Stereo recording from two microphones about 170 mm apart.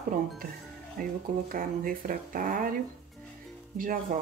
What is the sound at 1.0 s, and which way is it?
Speech, 55° right (ahead or behind).